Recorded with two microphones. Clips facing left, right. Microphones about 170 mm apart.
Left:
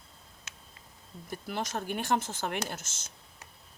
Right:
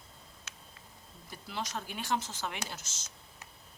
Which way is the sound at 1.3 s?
55° left (ahead or behind).